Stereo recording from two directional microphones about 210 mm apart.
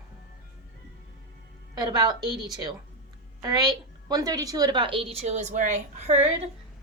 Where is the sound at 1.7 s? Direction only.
20° right (ahead or behind).